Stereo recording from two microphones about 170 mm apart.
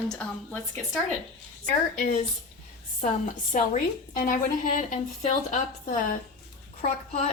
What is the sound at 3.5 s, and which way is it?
A woman's voice, 50° left (ahead or behind).